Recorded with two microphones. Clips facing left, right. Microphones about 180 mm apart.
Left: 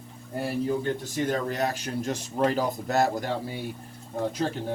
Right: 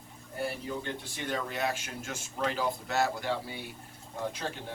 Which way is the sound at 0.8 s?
40° left (ahead or behind).